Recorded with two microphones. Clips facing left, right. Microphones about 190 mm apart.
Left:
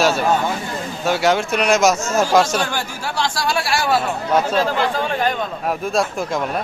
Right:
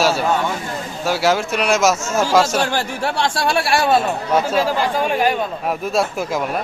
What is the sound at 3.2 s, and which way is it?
Speech, 60° right (ahead or behind).